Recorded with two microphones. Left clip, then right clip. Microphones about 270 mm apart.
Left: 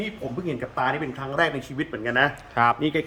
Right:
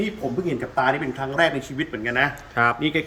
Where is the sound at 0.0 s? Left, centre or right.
Centre.